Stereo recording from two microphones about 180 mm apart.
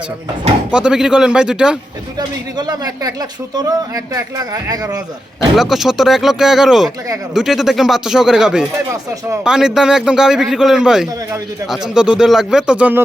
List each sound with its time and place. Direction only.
0.7 s a man's voice: 5° right (ahead or behind)
2.1 s speech: 20° right (ahead or behind)
5.5 s a man's voice: centre (ahead or behind)